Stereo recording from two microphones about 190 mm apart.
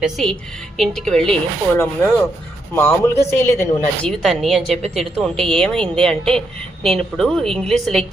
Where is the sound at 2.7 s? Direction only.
10° left (ahead or behind).